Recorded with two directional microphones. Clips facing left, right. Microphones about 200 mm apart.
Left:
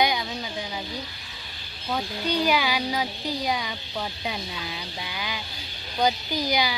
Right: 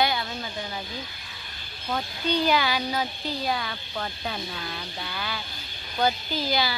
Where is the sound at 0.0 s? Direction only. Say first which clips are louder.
Left 1 dB; 15° left (ahead or behind).